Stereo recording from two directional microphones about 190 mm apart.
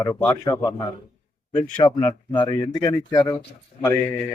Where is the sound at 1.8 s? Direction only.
25° left (ahead or behind).